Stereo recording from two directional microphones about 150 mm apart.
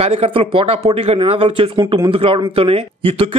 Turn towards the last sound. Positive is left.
turn(degrees=-40)  # may be behind; listen again after turning